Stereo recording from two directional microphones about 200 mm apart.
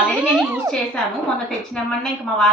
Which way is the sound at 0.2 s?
5° right (ahead or behind).